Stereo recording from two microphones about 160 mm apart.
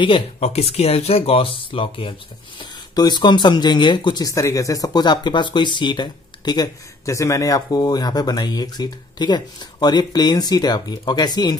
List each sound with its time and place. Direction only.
0.0 s speech: 35° left (ahead or behind)